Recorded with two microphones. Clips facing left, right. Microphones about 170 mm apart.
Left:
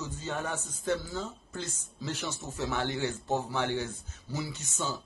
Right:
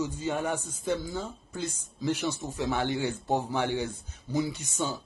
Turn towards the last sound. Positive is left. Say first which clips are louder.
# right 3 dB
turn(degrees=-15)  # may be behind; listen again after turning